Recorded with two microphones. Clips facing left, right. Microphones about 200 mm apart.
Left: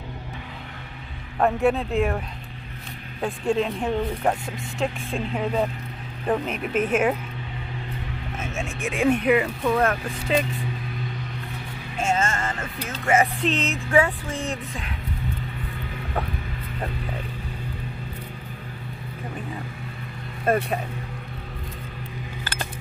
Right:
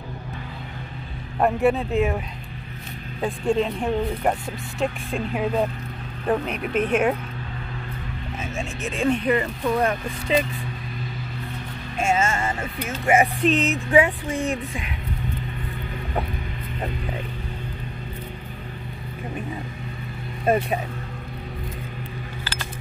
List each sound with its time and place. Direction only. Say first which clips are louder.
1.4 s speech: right 1 dB; 5° right (ahead or behind)
9.0 s speech: left 2 dB; 10° left (ahead or behind)
12.0 s music: right 2 dB; 10° right (ahead or behind)
13.0 s speech: right 2 dB; 15° right (ahead or behind)
20.4 s speech: right 1 dB; 5° right (ahead or behind)
22.4 s a sound: left 4 dB; 55° left (ahead or behind)